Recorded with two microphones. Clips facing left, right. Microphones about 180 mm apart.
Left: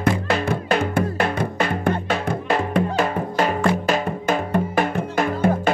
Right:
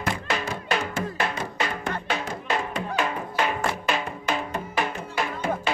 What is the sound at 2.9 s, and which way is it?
Music, 40° left (ahead or behind).